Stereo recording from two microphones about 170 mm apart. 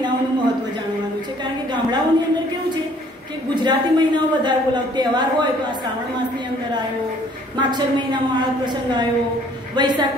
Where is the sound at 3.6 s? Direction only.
25° right (ahead or behind).